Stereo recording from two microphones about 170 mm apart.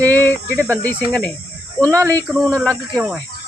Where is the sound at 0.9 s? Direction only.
10° left (ahead or behind).